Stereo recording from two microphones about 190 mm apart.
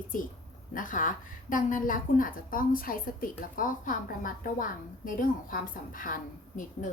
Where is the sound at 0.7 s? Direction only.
45° left (ahead or behind).